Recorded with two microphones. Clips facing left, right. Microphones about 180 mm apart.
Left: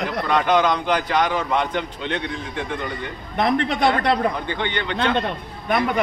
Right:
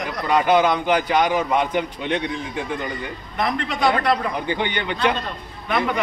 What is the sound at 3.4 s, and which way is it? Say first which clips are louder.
Speech: left 4 dB; 60° left (ahead or behind).